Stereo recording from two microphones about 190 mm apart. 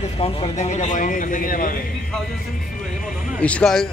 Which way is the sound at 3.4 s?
5° left (ahead or behind).